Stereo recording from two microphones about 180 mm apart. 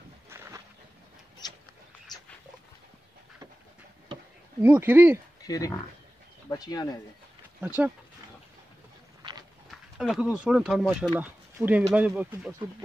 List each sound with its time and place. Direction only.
1.4 s a sound: 20° left (ahead or behind)
4.6 s speech: 10° right (ahead or behind)
5.4 s speech: 20° left (ahead or behind)
7.6 s speech: 10° right (ahead or behind)
9.7 s speech: 5° right (ahead or behind)